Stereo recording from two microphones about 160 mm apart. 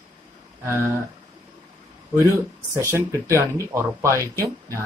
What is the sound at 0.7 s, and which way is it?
Speech, 15° right (ahead or behind).